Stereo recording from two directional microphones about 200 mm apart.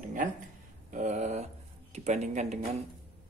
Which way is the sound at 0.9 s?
35° right (ahead or behind).